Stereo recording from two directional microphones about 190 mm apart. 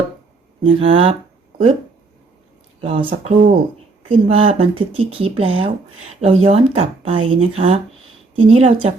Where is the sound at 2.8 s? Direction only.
30° right (ahead or behind).